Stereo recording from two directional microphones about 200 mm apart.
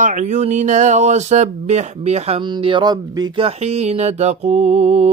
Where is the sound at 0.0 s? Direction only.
40° right (ahead or behind).